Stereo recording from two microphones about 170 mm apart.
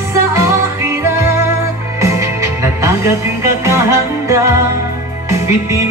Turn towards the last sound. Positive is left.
turn(degrees=-15)  # may be behind; listen again after turning